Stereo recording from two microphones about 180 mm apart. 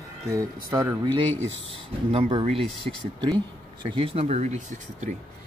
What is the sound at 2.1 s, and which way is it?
Speech, 30° right (ahead or behind).